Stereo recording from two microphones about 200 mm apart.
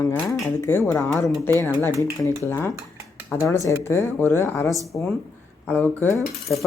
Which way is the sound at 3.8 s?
15° left (ahead or behind).